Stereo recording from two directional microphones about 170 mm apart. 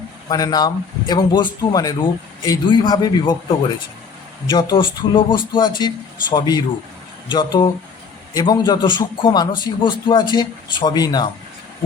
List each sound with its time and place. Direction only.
0.3 s a man's voice: 20° left (ahead or behind)
4.4 s a man's voice: 25° left (ahead or behind)